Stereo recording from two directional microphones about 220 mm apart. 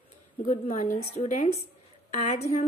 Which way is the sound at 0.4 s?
35° left (ahead or behind).